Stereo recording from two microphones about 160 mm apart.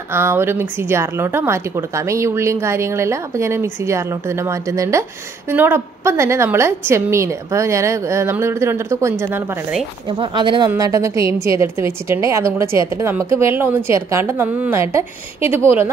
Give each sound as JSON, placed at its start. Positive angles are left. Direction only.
{"t": 0.1, "sound": "a woman's voice", "side_deg": -15}
{"t": 10.0, "sound": "speech", "side_deg": -30}
{"t": 10.7, "sound": "a woman's voice", "side_deg": -20}